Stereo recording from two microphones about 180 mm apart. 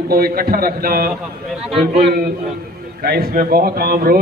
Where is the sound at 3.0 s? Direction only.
55° right (ahead or behind).